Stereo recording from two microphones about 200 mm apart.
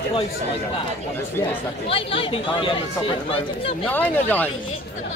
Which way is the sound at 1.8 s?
25° left (ahead or behind).